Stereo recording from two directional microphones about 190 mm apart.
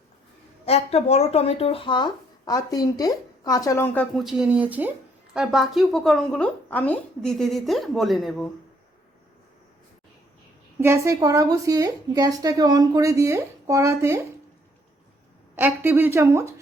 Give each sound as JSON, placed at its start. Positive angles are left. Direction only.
{"t": 0.6, "sound": "speech", "side_deg": 30}
{"t": 4.1, "sound": "a woman's voice", "side_deg": 0}
{"t": 10.8, "sound": "a woman's voice", "side_deg": -15}
{"t": 15.5, "sound": "a woman's voice", "side_deg": -10}